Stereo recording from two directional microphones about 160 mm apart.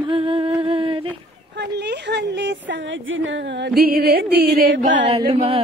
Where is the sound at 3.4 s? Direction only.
90° right; by 4.9 s 70° right (ahead or behind).